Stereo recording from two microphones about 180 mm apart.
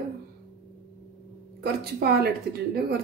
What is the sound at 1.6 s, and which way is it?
A woman's voice, 60° right (ahead or behind).